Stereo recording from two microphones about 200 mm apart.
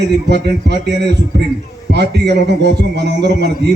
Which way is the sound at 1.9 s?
55° right (ahead or behind).